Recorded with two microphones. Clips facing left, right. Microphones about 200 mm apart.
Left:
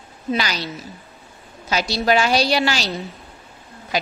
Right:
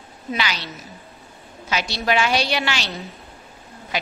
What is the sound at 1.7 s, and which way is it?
A woman's voice, 40° left (ahead or behind).